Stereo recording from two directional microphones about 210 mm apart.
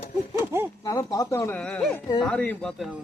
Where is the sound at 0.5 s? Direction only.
10° right (ahead or behind).